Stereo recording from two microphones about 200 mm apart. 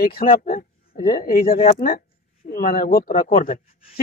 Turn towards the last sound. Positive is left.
turn(degrees=40)  # may be behind; listen again after turning